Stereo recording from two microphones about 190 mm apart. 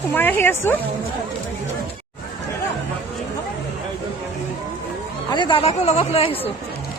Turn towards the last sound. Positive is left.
turn(degrees=30)  # may be behind; listen again after turning